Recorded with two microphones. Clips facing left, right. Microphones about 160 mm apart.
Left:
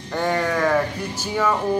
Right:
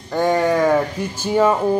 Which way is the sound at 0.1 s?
15° right (ahead or behind).